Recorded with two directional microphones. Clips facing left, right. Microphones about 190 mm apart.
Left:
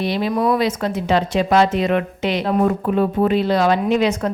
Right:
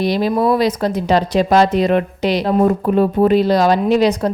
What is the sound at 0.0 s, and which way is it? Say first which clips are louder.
Speech: right 3 dB; 40° right (ahead or behind).